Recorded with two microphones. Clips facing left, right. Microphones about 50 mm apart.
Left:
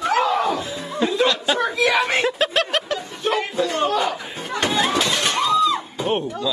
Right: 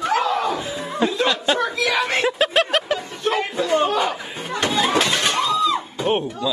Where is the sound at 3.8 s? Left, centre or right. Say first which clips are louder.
Even; centre.